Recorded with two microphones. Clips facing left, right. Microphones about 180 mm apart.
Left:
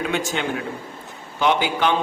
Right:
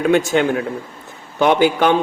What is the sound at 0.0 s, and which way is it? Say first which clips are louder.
A man's voice: right 9 dB; 50° right (ahead or behind).